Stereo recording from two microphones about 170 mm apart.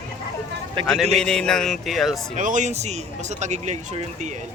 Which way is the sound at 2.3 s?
50° right (ahead or behind).